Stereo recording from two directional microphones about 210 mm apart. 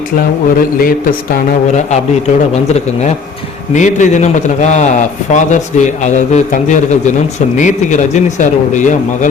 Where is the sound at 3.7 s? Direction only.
35° left (ahead or behind).